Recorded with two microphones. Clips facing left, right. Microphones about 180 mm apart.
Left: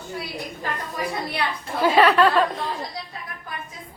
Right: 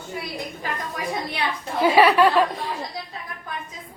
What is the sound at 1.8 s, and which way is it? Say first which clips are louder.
Speech: right 1 dB; 15° right (ahead or behind).